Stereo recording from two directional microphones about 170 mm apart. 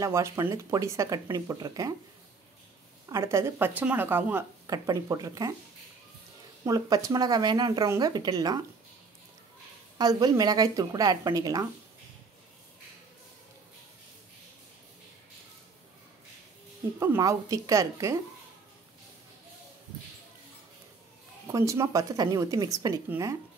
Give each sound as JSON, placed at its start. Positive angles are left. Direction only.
{"t": 0.0, "sound": "speech", "side_deg": -15}
{"t": 3.1, "sound": "speech", "side_deg": -15}
{"t": 6.6, "sound": "speech", "side_deg": -20}
{"t": 9.9, "sound": "speech", "side_deg": -25}
{"t": 17.0, "sound": "speech", "side_deg": -15}
{"t": 21.5, "sound": "speech", "side_deg": -15}